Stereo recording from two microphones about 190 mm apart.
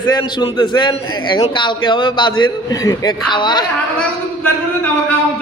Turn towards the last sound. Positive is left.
turn(degrees=25)  # may be behind; listen again after turning